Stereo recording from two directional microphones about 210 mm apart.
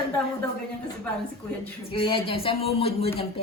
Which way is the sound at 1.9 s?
25° left (ahead or behind).